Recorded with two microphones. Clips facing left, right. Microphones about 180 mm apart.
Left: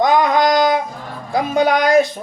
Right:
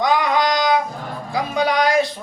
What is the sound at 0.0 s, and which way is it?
Singing, 50° left (ahead or behind).